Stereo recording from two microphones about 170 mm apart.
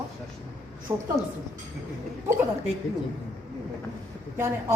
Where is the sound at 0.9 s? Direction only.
15° right (ahead or behind).